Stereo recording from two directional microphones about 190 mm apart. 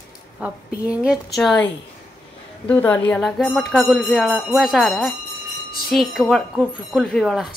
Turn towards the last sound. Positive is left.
turn(degrees=0)  # may be behind; listen again after turning